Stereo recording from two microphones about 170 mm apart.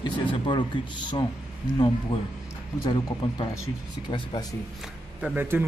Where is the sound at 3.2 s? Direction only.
30° left (ahead or behind).